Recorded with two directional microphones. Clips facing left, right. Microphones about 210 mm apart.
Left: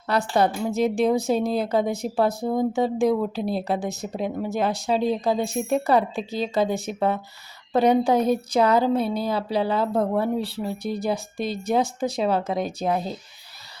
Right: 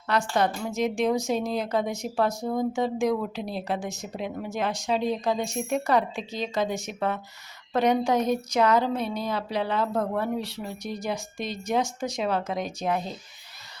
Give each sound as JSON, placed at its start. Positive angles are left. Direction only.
{"t": 0.1, "sound": "speech", "side_deg": 35}